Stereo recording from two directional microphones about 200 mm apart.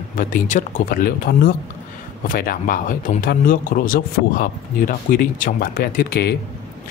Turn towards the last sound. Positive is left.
turn(degrees=50)  # may be behind; listen again after turning